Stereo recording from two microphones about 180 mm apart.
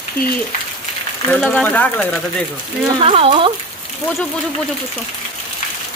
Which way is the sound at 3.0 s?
30° right (ahead or behind).